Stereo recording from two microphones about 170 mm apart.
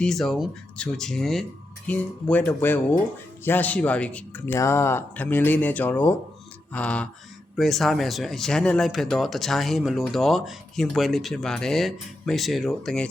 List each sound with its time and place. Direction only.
0.0 s speech: centre (ahead or behind)